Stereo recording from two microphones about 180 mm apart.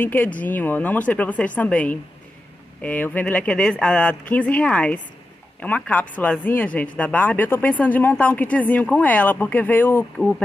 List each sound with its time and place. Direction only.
0.0 s speech: 10° left (ahead or behind)